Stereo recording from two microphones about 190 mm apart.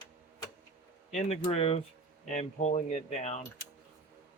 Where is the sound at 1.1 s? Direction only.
35° left (ahead or behind).